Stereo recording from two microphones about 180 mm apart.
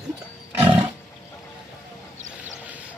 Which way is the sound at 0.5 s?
35° right (ahead or behind).